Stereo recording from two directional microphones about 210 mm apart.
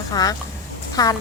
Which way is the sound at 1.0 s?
20° left (ahead or behind).